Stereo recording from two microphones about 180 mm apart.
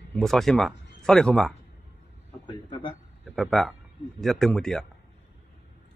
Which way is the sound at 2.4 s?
25° left (ahead or behind).